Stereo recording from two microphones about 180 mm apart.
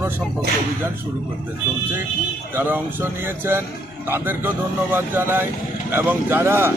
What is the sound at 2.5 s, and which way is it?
Speech, 10° right (ahead or behind).